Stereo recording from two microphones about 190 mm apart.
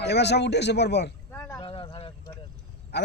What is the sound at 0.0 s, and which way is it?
A man's voice, 60° left (ahead or behind).